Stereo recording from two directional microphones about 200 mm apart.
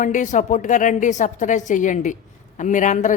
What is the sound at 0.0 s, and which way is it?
Speech, 40° left (ahead or behind).